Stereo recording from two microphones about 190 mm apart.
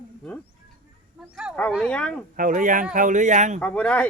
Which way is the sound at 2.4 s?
45° right (ahead or behind).